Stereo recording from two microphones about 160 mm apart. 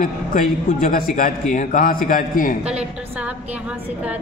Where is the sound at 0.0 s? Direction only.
60° left (ahead or behind).